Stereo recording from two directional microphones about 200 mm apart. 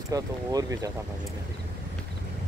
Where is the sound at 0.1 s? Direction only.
15° right (ahead or behind).